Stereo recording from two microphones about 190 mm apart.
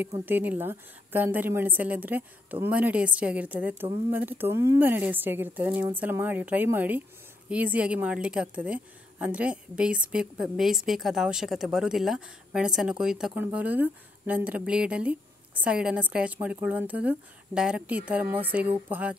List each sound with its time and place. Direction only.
0.0 s a woman's voice: 10° right (ahead or behind)